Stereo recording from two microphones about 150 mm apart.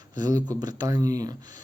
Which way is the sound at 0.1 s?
25° right (ahead or behind).